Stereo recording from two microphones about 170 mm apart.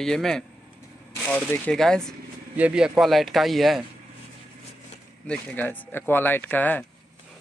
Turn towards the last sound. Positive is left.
turn(degrees=10)  # may be behind; listen again after turning